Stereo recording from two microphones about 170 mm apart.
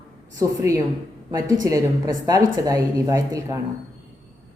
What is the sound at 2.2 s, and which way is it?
A woman's voice, 20° right (ahead or behind).